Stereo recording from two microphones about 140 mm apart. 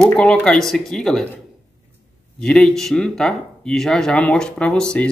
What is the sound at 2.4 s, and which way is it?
Speech, 5° left (ahead or behind).